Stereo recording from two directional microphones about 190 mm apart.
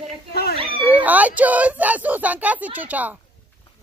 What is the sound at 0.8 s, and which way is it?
Speech, 10° right (ahead or behind).